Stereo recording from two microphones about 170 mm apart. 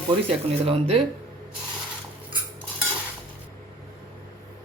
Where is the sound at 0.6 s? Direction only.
35° right (ahead or behind).